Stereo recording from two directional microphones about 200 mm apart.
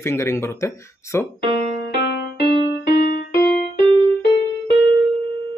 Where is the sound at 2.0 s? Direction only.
55° left (ahead or behind).